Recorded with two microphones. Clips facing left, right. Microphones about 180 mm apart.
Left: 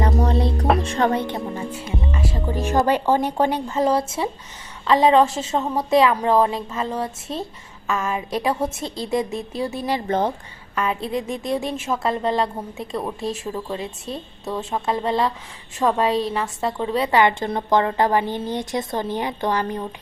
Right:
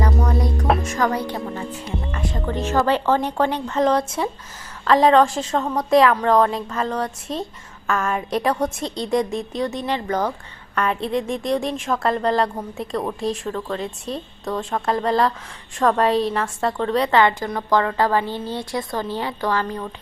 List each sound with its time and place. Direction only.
0.0 s a woman's voice: 30° left (ahead or behind)
1.5 s a woman's voice: 10° left (ahead or behind)
10.1 s a woman's voice: 25° left (ahead or behind)
10.8 s a woman's voice: centre (ahead or behind)
17.2 s a woman's voice: 20° left (ahead or behind)